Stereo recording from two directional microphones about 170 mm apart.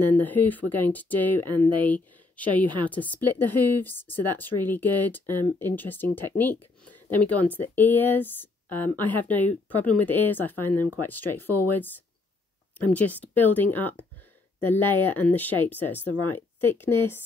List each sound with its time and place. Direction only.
0.0 s speech: 10° left (ahead or behind)
2.6 s a woman's voice: 30° right (ahead or behind)
2.9 s speech: 10° left (ahead or behind)
12.9 s speech: 10° left (ahead or behind)